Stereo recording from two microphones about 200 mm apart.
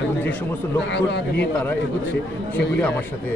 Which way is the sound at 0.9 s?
60° left (ahead or behind).